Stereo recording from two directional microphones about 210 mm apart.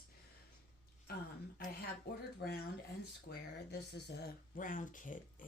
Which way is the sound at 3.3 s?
50° left (ahead or behind).